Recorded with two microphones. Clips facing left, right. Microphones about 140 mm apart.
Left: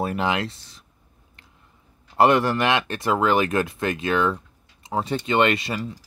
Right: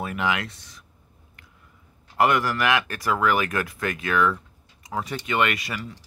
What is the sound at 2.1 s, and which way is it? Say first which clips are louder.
Speech: left 4 dB; 30° left (ahead or behind).